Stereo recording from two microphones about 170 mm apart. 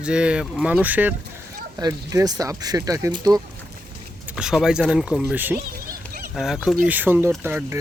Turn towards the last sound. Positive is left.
turn(degrees=-10)  # may be behind; listen again after turning